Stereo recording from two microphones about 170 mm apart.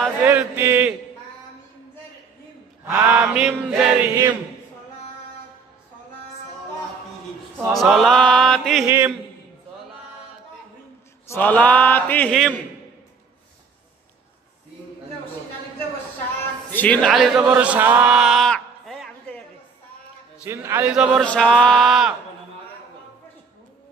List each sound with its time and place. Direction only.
0.2 s mantra: 10° right (ahead or behind)
3.0 s mantra: 10° right (ahead or behind)
4.1 s speech: 25° right (ahead or behind)
7.7 s a sound: centre (ahead or behind)
8.8 s mantra: 10° right (ahead or behind)
11.2 s a man's voice: 10° left (ahead or behind)
16.7 s a man's voice: 10° left (ahead or behind)
17.1 s a man's voice: 5° right (ahead or behind)
20.4 s mantra: 15° right (ahead or behind)
20.9 s a sound: centre (ahead or behind)